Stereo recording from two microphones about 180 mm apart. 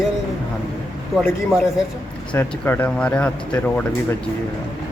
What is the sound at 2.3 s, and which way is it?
Speech, 10° left (ahead or behind).